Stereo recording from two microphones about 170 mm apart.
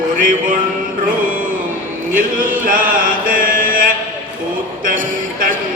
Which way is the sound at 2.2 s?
55° right (ahead or behind).